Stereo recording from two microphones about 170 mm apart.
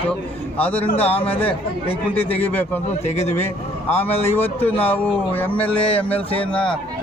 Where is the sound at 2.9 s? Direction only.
40° left (ahead or behind).